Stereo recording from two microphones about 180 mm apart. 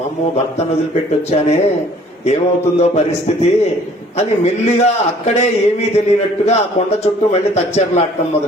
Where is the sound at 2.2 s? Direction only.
35° left (ahead or behind).